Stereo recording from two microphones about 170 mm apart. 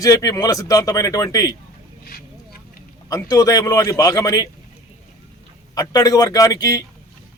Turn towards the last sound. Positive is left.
turn(degrees=20)  # may be behind; listen again after turning